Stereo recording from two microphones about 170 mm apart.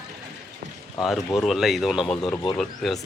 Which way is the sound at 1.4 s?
Centre (ahead or behind).